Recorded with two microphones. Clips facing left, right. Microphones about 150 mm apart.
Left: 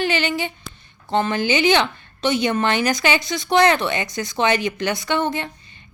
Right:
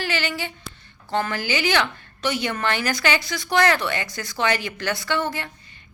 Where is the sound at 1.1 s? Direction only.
20° left (ahead or behind).